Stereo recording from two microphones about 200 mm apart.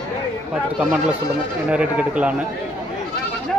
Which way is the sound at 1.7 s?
5° right (ahead or behind).